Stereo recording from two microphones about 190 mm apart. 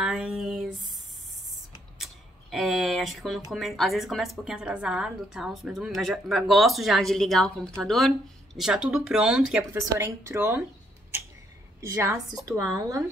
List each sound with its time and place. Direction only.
0.0 s a sound: 5° right (ahead or behind)
2.5 s a woman's voice: centre (ahead or behind)
9.8 s speech: 15° right (ahead or behind)
11.8 s speech: 15° right (ahead or behind)